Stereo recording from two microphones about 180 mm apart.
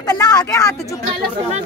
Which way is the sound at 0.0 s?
20° left (ahead or behind).